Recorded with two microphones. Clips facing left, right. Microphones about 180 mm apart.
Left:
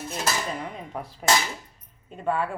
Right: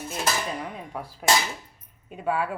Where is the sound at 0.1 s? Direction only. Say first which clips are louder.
Right 1 dB; centre (ahead or behind).